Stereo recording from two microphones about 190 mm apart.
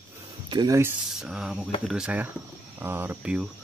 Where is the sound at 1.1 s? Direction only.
5° right (ahead or behind).